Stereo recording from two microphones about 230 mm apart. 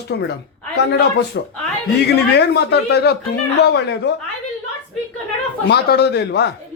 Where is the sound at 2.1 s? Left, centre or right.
Left.